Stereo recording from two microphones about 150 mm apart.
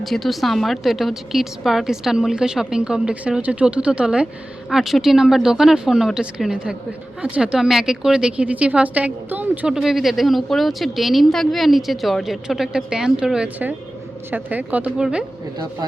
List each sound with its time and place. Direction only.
0.0 s speech: centre (ahead or behind)